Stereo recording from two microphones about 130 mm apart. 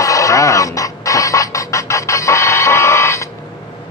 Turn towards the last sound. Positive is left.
turn(degrees=20)  # may be behind; listen again after turning